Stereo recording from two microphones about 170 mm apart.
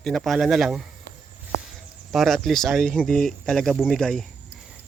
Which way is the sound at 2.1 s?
Centre (ahead or behind).